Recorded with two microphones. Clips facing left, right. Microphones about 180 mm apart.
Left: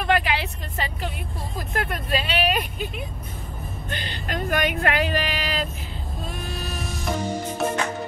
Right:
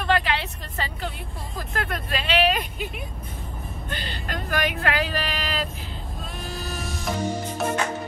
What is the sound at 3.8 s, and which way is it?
Music, 45° left (ahead or behind).